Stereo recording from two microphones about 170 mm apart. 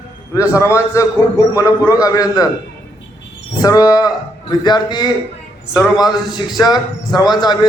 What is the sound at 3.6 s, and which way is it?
A man's voice, 20° left (ahead or behind).